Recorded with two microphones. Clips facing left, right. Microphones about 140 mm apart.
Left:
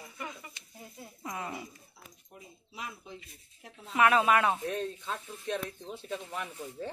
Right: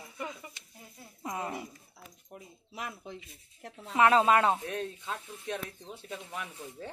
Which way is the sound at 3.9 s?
25° right (ahead or behind).